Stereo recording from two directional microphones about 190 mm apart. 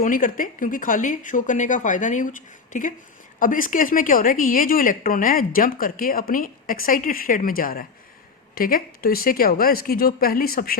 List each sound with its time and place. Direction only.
0.0 s a woman's voice: 45° left (ahead or behind)